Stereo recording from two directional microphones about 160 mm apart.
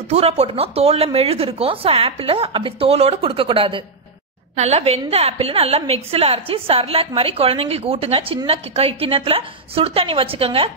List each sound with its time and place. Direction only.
0.1 s a woman's voice: 40° right (ahead or behind)